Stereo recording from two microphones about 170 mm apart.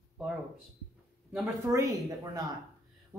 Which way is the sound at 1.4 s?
20° right (ahead or behind).